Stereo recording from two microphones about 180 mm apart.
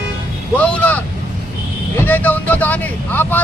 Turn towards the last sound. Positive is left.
turn(degrees=10)  # may be behind; listen again after turning